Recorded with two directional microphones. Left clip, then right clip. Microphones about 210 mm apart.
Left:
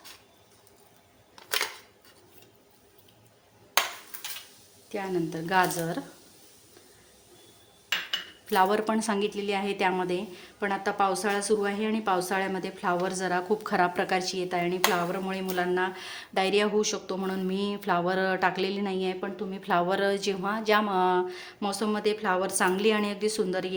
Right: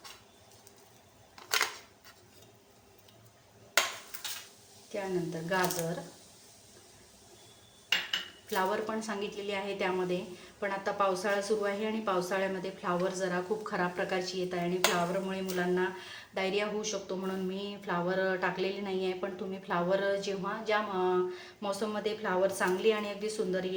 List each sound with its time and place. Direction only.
4.9 s speech: 55° left (ahead or behind)
8.4 s speech: 50° left (ahead or behind); by 19.5 s 35° left (ahead or behind)
19.6 s speech: 50° left (ahead or behind)